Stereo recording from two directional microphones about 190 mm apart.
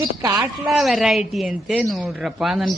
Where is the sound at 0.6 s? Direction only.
Centre (ahead or behind).